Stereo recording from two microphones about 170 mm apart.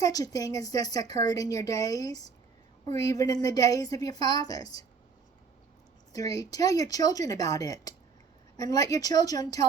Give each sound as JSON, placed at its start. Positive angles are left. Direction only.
{"t": 0.0, "sound": "a woman's voice", "side_deg": 20}
{"t": 6.1, "sound": "a woman's voice", "side_deg": 20}